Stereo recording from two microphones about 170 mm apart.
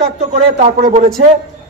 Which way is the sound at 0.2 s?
40° right (ahead or behind).